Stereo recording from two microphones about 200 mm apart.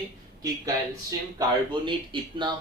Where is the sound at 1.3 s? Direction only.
25° right (ahead or behind).